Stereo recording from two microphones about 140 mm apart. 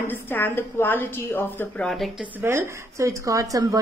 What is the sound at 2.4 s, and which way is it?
Speech, 20° right (ahead or behind).